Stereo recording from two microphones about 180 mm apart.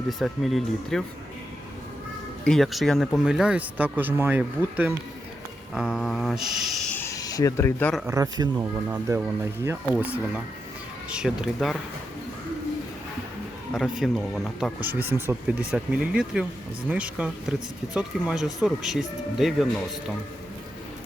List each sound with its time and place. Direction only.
0.1 s speech: centre (ahead or behind)
2.4 s speech: centre (ahead or behind)
8.0 s a man's voice: 15° right (ahead or behind); by 11.8 s centre (ahead or behind)
13.7 s speech: centre (ahead or behind)